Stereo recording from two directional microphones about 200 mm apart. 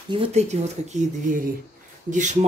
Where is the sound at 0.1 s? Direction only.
30° right (ahead or behind).